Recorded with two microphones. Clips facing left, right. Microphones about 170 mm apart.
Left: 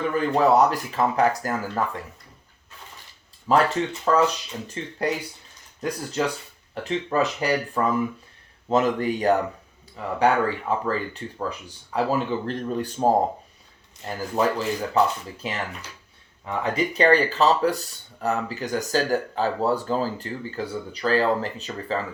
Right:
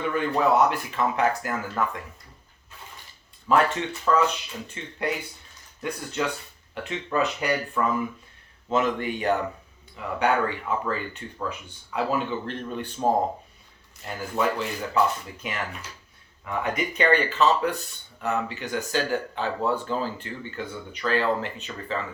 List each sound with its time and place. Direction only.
0.1 s speech: 35° left (ahead or behind)
3.5 s speech: 35° left (ahead or behind)
14.1 s speech: 35° left (ahead or behind)